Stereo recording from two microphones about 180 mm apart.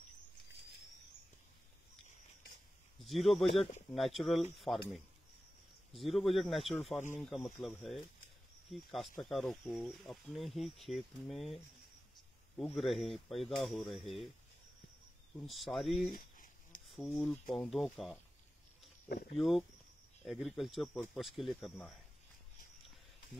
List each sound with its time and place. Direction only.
3.0 s speech: centre (ahead or behind)
12.7 s speech: centre (ahead or behind)
15.3 s speech: centre (ahead or behind)
16.1 s a sound: 50° left (ahead or behind)
16.9 s speech: 5° left (ahead or behind)
19.0 s speech: 55° left (ahead or behind)
19.3 s speech: centre (ahead or behind)